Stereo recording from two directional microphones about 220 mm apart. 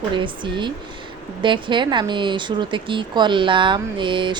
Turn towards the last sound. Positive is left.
turn(degrees=-20)  # may be behind; listen again after turning